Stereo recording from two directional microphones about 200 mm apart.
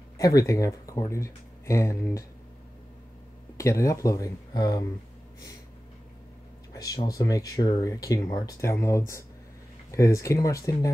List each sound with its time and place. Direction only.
0.2 s speech: 20° left (ahead or behind)
3.5 s speech: 15° left (ahead or behind)
6.7 s speech: 15° left (ahead or behind)